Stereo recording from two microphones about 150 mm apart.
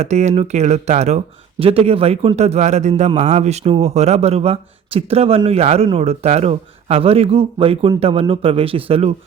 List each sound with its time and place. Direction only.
0.0 s speech: 50° right (ahead or behind)